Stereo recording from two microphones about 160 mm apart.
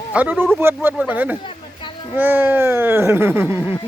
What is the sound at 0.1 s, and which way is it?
Speech, 10° right (ahead or behind).